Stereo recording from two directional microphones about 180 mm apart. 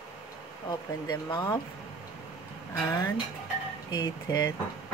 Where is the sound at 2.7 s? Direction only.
15° left (ahead or behind).